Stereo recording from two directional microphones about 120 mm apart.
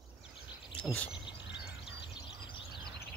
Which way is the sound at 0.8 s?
10° left (ahead or behind).